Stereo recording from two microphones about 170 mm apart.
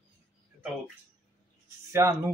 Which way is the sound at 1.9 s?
15° right (ahead or behind).